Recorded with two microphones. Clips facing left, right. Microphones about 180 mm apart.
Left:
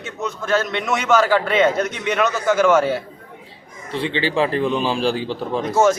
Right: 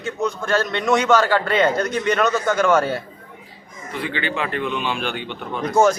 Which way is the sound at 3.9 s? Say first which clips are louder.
Left 5 dB; 30° left (ahead or behind).